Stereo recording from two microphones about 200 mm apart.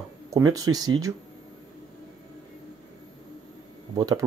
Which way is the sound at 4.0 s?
20° right (ahead or behind).